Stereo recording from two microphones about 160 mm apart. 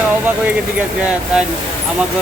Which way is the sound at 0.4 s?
10° right (ahead or behind).